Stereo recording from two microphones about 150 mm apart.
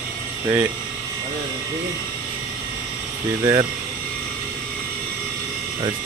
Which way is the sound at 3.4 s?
30° right (ahead or behind).